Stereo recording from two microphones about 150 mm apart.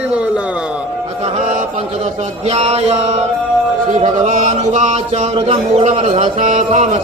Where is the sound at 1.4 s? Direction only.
60° right (ahead or behind).